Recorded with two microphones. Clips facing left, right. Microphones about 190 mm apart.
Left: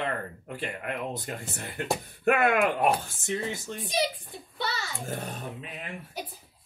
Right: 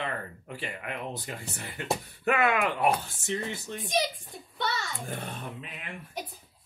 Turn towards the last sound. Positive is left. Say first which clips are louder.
# left 2 dB
turn(degrees=40)  # may be behind; listen again after turning